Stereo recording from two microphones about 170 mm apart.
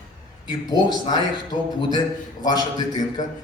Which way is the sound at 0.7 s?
25° left (ahead or behind).